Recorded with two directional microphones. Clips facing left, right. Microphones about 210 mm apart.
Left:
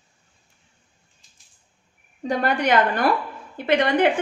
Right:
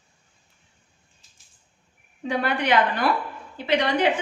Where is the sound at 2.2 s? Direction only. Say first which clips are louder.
Left 3 dB; 45° left (ahead or behind).